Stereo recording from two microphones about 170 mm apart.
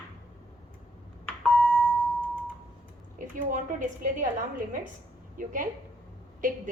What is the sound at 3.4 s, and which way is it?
Speech, 50° right (ahead or behind).